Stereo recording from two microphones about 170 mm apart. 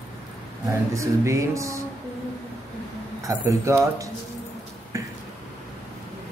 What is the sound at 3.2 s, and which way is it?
Speech, 20° right (ahead or behind).